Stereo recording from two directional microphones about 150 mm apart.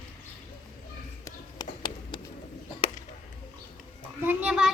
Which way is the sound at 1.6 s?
30° left (ahead or behind).